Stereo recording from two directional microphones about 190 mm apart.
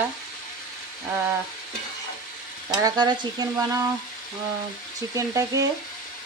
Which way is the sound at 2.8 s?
20° right (ahead or behind).